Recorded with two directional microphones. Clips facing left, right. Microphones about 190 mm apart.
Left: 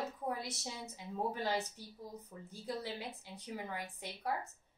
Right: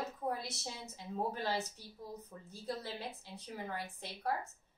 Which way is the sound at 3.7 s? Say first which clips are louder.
Right 1 dB; 10° left (ahead or behind).